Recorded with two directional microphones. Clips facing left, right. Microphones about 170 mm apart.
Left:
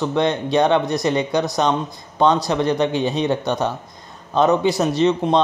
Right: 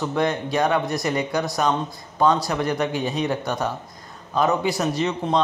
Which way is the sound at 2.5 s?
25° left (ahead or behind).